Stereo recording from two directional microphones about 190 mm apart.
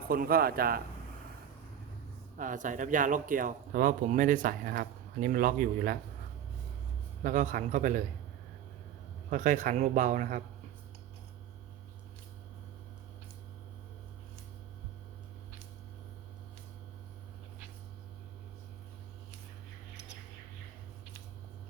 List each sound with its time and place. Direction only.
0.1 s speech: 50° right (ahead or behind)
2.4 s speech: 45° right (ahead or behind)
7.2 s speech: 45° right (ahead or behind)
9.3 s speech: 40° right (ahead or behind)